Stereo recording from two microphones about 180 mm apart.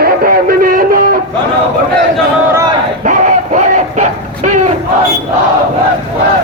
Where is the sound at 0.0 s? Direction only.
55° right (ahead or behind).